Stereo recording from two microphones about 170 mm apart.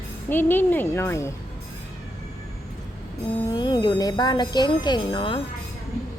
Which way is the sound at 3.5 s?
25° left (ahead or behind).